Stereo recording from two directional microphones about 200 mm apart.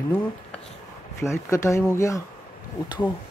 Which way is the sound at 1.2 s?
15° left (ahead or behind).